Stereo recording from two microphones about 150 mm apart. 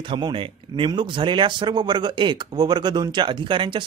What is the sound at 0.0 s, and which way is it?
Speech, 35° right (ahead or behind).